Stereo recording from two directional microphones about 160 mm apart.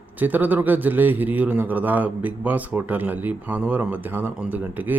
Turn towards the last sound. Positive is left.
turn(degrees=-10)  # may be behind; listen again after turning